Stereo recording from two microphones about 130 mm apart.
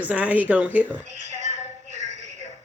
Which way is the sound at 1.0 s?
60° right (ahead or behind).